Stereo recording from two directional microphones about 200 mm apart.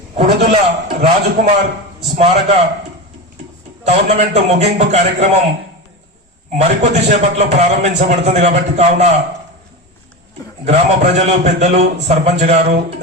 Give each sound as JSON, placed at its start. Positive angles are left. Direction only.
{"t": 0.4, "sound": "a man's voice", "side_deg": -30}
{"t": 3.8, "sound": "a man's voice", "side_deg": -35}
{"t": 6.6, "sound": "a man's voice", "side_deg": -35}
{"t": 10.7, "sound": "a man's voice", "side_deg": -35}